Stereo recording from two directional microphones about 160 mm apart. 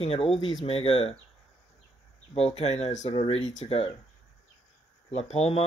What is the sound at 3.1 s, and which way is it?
Speech, 30° left (ahead or behind).